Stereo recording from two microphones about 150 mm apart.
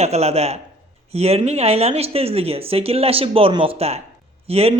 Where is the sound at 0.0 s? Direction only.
45° right (ahead or behind).